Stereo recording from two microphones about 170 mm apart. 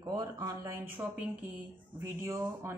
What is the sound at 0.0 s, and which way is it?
Speech, 25° right (ahead or behind).